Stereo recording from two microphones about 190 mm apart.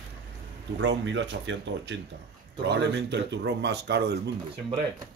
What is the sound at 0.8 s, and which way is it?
Speech, 70° right (ahead or behind).